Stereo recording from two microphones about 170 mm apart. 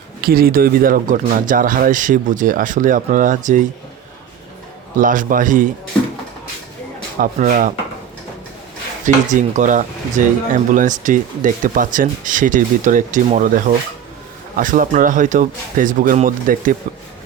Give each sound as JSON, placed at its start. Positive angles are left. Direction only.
{"t": 0.2, "sound": "speech", "side_deg": -60}
{"t": 4.9, "sound": "speech", "side_deg": -50}
{"t": 7.2, "sound": "speech", "side_deg": -55}
{"t": 9.3, "sound": "speech", "side_deg": -45}
{"t": 14.5, "sound": "speech", "side_deg": -55}